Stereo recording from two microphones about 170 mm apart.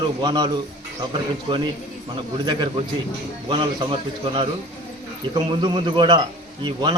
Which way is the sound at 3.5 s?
30° right (ahead or behind).